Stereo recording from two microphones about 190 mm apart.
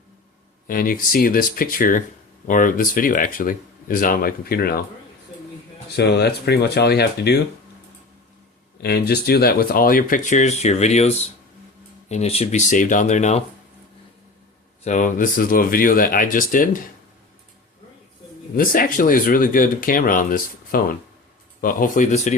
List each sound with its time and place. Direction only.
0.7 s speech: 45° left (ahead or behind)
6.0 s speech: 60° left (ahead or behind)
8.8 s speech: 55° left (ahead or behind); by 13.4 s 40° left (ahead or behind)
14.8 s speech: 40° left (ahead or behind)
18.5 s speech: 45° left (ahead or behind)